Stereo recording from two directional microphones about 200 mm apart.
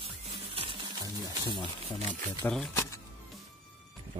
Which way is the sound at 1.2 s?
25° left (ahead or behind).